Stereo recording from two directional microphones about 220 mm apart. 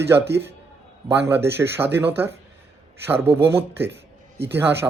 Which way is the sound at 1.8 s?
10° right (ahead or behind).